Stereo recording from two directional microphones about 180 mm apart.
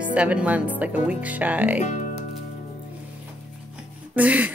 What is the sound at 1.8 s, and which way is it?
Music, 40° left (ahead or behind).